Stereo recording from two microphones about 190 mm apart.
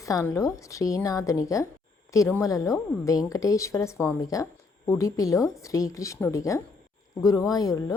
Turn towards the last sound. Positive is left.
turn(degrees=20)  # may be behind; listen again after turning